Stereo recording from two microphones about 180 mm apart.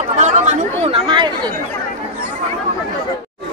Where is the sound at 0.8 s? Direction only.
30° right (ahead or behind).